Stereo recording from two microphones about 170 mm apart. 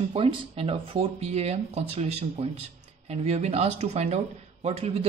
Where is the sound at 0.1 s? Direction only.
30° right (ahead or behind).